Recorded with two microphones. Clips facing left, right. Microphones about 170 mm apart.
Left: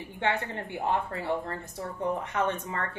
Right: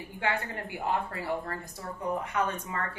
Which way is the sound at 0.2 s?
25° left (ahead or behind).